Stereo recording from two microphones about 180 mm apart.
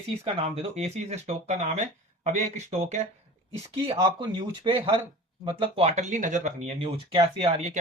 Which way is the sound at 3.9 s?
30° right (ahead or behind).